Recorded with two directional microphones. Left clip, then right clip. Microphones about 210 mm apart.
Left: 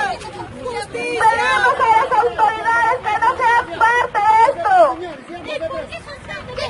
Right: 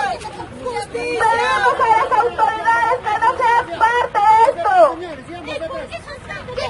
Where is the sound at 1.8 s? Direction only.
15° right (ahead or behind).